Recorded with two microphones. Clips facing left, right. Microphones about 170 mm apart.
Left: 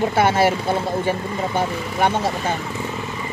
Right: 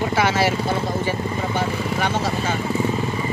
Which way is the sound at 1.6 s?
25° left (ahead or behind).